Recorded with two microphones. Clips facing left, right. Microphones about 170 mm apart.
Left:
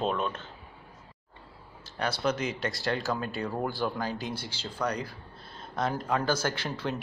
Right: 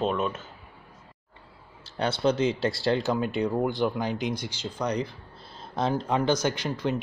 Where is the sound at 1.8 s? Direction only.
30° right (ahead or behind).